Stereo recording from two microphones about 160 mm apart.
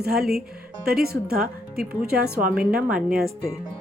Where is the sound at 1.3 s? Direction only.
70° right (ahead or behind).